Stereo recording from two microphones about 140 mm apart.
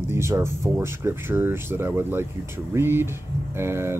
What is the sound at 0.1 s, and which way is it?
Speech, 20° right (ahead or behind).